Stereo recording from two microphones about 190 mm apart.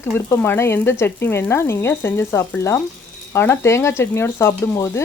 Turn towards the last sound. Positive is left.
turn(degrees=15)  # may be behind; listen again after turning